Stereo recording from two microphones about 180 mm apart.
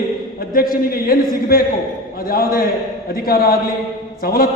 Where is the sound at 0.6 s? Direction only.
55° left (ahead or behind).